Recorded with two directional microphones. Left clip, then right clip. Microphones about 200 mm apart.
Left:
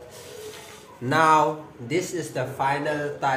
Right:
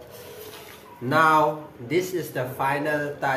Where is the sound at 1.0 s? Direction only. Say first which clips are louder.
Even; 20° left (ahead or behind).